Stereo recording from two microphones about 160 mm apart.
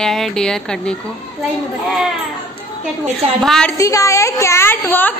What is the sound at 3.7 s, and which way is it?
A woman's voice, 20° left (ahead or behind).